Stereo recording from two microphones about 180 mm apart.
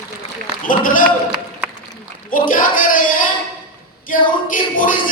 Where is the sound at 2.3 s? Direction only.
50° left (ahead or behind).